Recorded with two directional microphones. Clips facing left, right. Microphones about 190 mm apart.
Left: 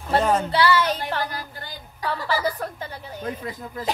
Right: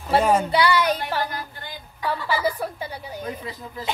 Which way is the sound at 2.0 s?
10° right (ahead or behind).